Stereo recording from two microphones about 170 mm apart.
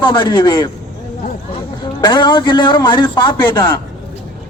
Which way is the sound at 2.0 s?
25° left (ahead or behind).